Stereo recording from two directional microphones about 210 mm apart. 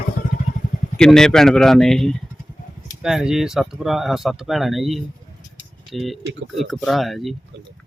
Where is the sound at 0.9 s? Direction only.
5° left (ahead or behind).